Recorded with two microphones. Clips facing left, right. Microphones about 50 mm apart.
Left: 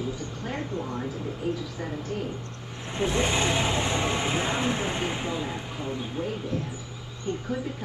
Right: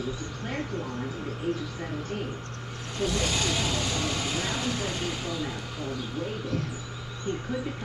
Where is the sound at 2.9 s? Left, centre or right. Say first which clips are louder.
Left 3 dB; left.